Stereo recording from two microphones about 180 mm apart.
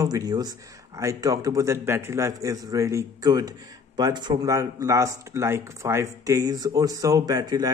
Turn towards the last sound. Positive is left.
turn(degrees=-20)  # may be behind; listen again after turning